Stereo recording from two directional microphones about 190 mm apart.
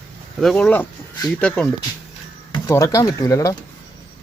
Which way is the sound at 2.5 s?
15° left (ahead or behind).